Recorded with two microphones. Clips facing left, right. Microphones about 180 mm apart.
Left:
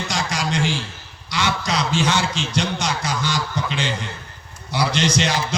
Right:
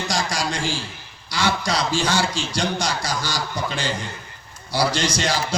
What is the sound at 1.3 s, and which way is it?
A man's voice, 35° right (ahead or behind).